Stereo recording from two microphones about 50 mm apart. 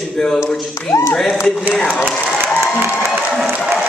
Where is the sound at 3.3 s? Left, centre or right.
Centre.